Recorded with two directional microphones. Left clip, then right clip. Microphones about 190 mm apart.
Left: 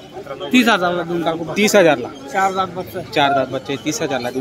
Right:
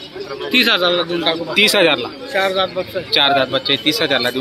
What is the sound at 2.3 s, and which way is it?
Speech, 60° left (ahead or behind).